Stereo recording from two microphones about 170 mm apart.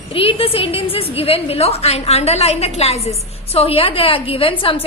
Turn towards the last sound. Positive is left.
turn(degrees=35)  # may be behind; listen again after turning